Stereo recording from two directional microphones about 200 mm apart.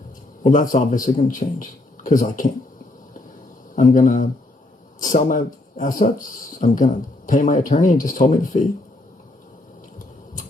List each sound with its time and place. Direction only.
0.4 s speech: 40° left (ahead or behind)
3.8 s speech: 40° left (ahead or behind)